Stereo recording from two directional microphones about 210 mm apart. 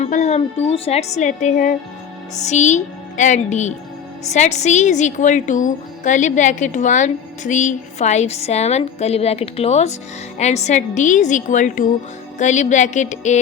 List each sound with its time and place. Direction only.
0.0 s a woman's voice: 35° left (ahead or behind)